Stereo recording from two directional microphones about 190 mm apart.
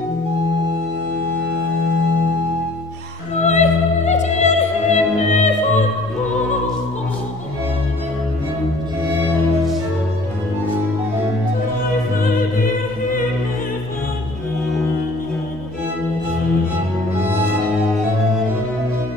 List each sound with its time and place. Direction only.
3.4 s opera: 35° left (ahead or behind)